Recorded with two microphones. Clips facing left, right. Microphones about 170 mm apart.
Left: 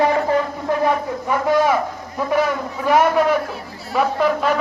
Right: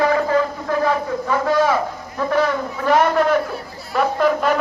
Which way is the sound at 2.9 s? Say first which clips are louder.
Even; 10° left (ahead or behind).